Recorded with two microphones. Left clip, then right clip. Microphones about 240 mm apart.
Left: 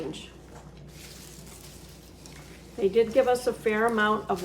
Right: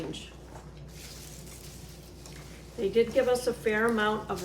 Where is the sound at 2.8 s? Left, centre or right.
Left.